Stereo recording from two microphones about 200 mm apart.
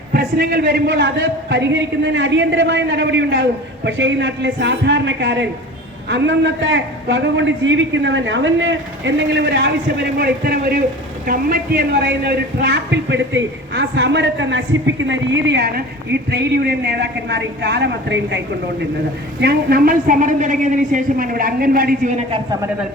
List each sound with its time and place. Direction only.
0.1 s a man's voice: 50° right (ahead or behind)